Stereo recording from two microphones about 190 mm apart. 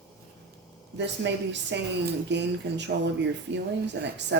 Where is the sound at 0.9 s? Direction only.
65° right (ahead or behind).